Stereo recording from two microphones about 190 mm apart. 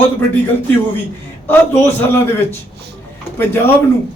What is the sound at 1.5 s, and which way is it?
Speech, 10° left (ahead or behind).